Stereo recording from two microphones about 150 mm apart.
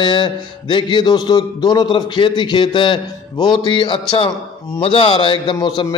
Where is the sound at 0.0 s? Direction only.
30° left (ahead or behind).